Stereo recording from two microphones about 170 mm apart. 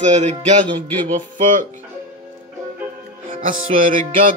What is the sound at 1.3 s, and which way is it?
Speech, 50° right (ahead or behind).